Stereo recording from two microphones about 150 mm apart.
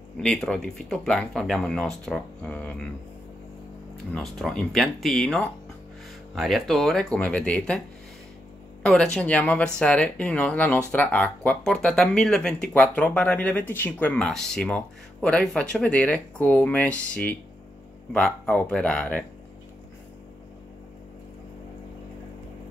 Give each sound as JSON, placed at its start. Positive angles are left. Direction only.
{"t": 0.2, "sound": "speech", "side_deg": 5}
{"t": 4.1, "sound": "speech", "side_deg": 5}
{"t": 8.8, "sound": "speech", "side_deg": 5}